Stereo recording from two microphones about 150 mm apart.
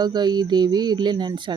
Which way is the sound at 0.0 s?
30° right (ahead or behind).